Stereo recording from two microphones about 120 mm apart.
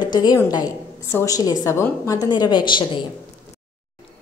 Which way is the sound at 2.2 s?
35° left (ahead or behind).